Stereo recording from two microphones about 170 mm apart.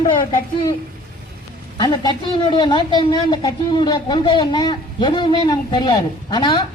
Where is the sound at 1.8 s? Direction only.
25° left (ahead or behind).